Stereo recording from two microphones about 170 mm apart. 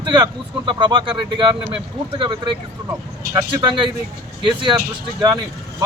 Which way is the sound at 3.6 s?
30° right (ahead or behind).